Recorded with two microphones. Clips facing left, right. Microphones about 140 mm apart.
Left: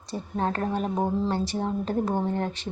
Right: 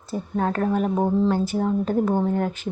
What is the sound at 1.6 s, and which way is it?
Speech, 35° left (ahead or behind).